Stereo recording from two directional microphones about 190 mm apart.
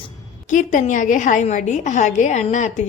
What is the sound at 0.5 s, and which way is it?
A woman's voice, 40° left (ahead or behind).